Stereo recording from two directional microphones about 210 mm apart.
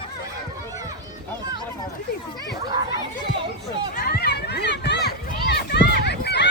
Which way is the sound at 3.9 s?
45° left (ahead or behind).